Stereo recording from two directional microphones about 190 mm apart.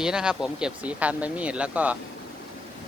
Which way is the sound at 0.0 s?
5° right (ahead or behind).